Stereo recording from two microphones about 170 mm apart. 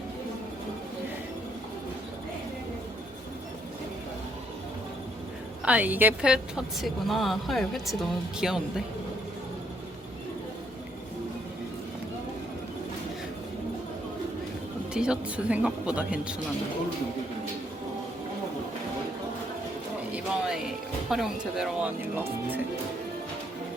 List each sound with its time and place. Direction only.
5.6 s speech: 10° right (ahead or behind)
14.9 s speech: 5° right (ahead or behind)
20.1 s speech: 5° right (ahead or behind)